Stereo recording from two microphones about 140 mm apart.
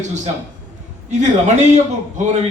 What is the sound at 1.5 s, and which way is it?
Speech, 60° right (ahead or behind).